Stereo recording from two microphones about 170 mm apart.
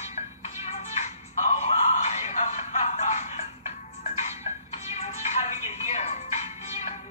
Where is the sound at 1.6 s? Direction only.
40° left (ahead or behind).